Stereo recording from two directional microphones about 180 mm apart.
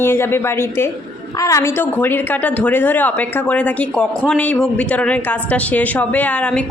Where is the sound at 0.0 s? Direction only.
10° left (ahead or behind).